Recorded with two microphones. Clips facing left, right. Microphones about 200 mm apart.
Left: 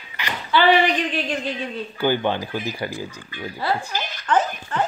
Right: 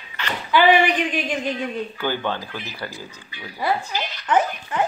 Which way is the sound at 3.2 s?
50° left (ahead or behind).